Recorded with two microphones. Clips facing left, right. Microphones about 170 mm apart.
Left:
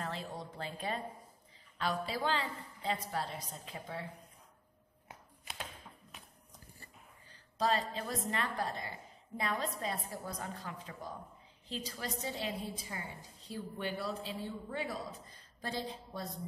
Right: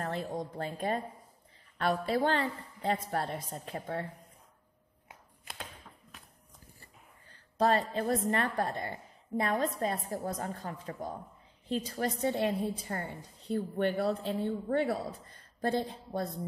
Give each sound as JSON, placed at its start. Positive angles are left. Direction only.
{"t": 0.0, "sound": "a woman's voice", "side_deg": -50}
{"t": 7.5, "sound": "a woman's voice", "side_deg": -55}